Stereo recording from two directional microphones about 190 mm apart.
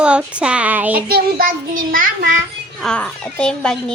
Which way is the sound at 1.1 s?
50° right (ahead or behind).